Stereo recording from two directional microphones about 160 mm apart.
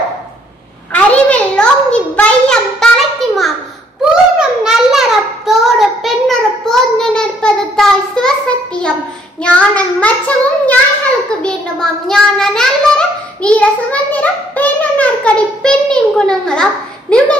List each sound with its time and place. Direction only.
0.9 s a sound: 5° left (ahead or behind)
4.1 s child singing: 5° right (ahead or behind)
9.4 s child singing: 10° left (ahead or behind)